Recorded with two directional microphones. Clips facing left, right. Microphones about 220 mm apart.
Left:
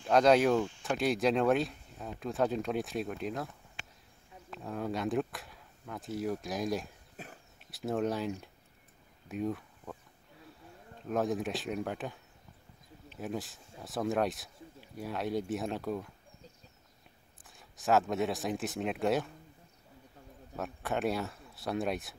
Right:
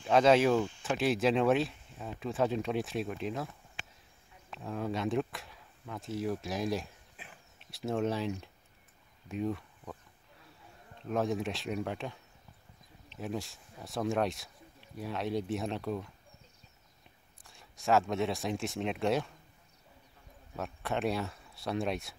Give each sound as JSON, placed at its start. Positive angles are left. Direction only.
{"t": 0.0, "sound": "speech", "side_deg": 0}
{"t": 4.6, "sound": "speech", "side_deg": 0}
{"t": 7.2, "sound": "a sound", "side_deg": 40}
{"t": 7.7, "sound": "speech", "side_deg": 0}
{"t": 11.1, "sound": "speech", "side_deg": 0}
{"t": 17.4, "sound": "speech", "side_deg": 0}
{"t": 20.5, "sound": "speech", "side_deg": 0}